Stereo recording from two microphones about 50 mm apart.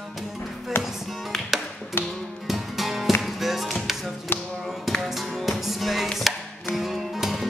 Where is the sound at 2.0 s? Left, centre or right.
Left.